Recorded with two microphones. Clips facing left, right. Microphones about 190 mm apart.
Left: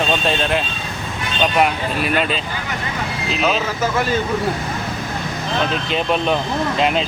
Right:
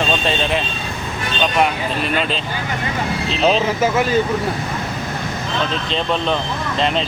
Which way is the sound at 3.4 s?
30° right (ahead or behind).